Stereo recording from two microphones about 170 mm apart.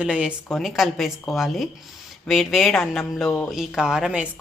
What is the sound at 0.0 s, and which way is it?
Speech, 5° right (ahead or behind).